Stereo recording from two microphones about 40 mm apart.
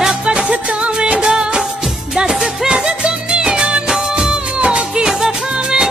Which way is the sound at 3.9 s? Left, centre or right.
Centre.